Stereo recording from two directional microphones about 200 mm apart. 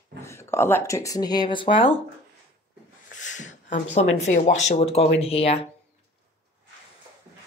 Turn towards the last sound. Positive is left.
turn(degrees=30)  # may be behind; listen again after turning